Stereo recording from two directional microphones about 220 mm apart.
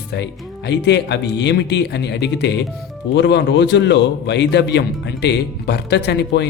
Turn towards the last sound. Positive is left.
turn(degrees=50)  # may be behind; listen again after turning